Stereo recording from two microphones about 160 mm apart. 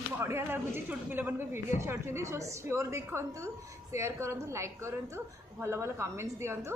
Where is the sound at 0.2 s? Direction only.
15° right (ahead or behind).